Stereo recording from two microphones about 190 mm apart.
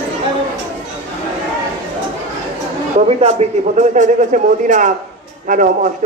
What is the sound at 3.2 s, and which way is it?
A man's voice, 35° right (ahead or behind).